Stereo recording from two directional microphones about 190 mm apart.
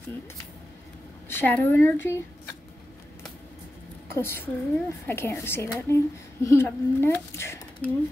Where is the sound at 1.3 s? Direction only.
10° left (ahead or behind).